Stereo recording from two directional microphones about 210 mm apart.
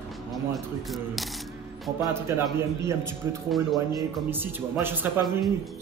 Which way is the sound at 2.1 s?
10° right (ahead or behind).